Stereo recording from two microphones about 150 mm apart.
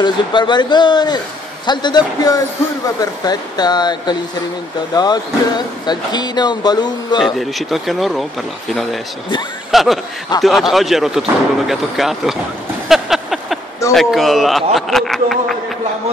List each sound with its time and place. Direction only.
0.0 s speech: 30° left (ahead or behind)
7.2 s speech: centre (ahead or behind)
9.7 s speech: centre (ahead or behind)
12.8 s a sound: centre (ahead or behind)
13.9 s speech: centre (ahead or behind)